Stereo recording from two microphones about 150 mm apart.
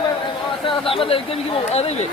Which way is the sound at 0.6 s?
35° left (ahead or behind).